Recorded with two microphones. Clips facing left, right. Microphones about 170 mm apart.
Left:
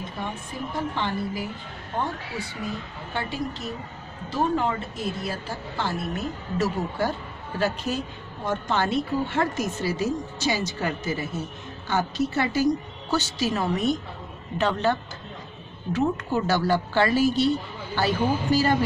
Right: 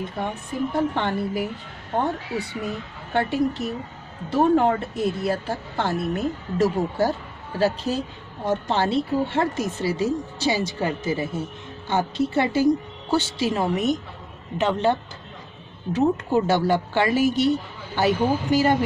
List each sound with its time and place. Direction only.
0.7 s speech: 60° right (ahead or behind); by 18.8 s 20° right (ahead or behind)